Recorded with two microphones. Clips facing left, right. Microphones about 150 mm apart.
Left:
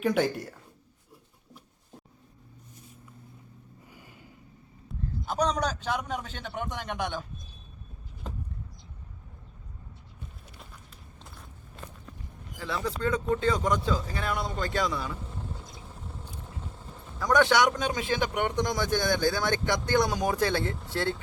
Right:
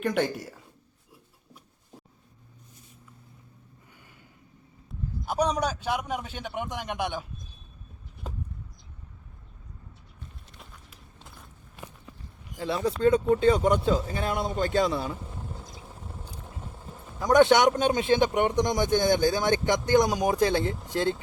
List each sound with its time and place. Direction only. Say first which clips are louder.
0.0 s a woman's voice: left 1 dB; centre (ahead or behind)
5.2 s a man's voice: right 2 dB; 10° right (ahead or behind)
8.2 s a sound: right 1 dB; 5° right (ahead or behind)
12.5 s speech: right 5 dB; 25° right (ahead or behind)
17.2 s speech: right 4 dB; 20° right (ahead or behind)